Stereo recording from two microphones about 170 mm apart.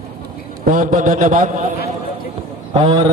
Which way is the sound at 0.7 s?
50° right (ahead or behind).